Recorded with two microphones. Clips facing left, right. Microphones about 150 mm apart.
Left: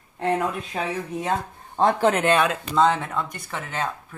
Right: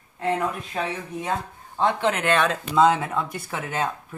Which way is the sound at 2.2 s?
10° left (ahead or behind).